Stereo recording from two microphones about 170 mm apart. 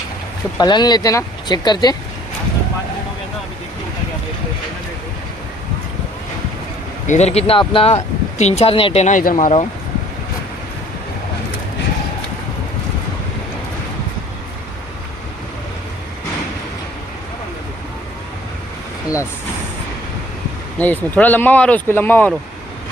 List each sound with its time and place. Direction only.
0.6 s speech: 25° left (ahead or behind)
7.1 s speech: 40° left (ahead or behind)
20.7 s speech: 10° left (ahead or behind)